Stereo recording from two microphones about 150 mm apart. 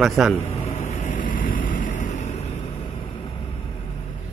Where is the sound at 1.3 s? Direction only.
60° left (ahead or behind).